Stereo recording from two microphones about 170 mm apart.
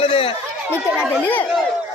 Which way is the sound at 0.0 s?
35° left (ahead or behind).